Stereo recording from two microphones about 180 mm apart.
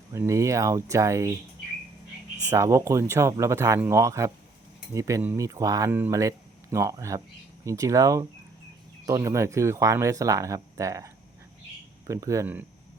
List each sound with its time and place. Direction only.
0.1 s speech: 15° right (ahead or behind)
2.5 s speech: 15° right (ahead or behind)